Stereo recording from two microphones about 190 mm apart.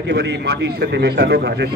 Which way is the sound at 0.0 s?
65° right (ahead or behind).